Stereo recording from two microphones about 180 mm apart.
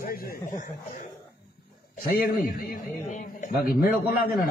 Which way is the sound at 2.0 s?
50° left (ahead or behind).